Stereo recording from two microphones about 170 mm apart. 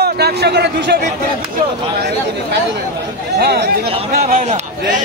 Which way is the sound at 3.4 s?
70° right (ahead or behind).